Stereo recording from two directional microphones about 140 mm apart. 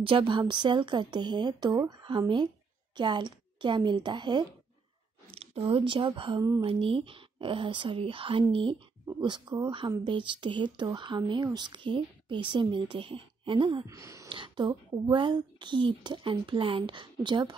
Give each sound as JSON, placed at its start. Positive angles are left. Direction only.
{"t": 0.0, "sound": "speech", "side_deg": -35}
{"t": 5.3, "sound": "a sound", "side_deg": -45}
{"t": 5.7, "sound": "speech", "side_deg": -40}
{"t": 13.8, "sound": "speech", "side_deg": -20}
{"t": 14.3, "sound": "speech", "side_deg": -35}